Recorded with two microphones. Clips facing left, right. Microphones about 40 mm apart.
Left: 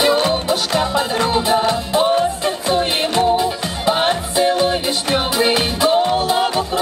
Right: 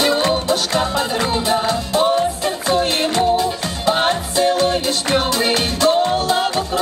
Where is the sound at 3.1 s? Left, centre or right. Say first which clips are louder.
Left 3 dB; centre.